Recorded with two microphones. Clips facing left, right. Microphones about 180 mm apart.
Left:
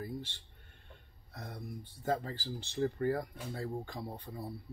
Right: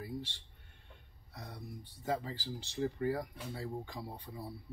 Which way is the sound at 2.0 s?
50° left (ahead or behind).